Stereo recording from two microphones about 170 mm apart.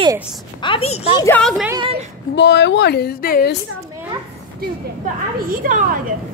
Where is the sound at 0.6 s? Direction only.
35° left (ahead or behind).